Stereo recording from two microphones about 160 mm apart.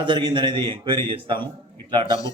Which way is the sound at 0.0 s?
30° right (ahead or behind).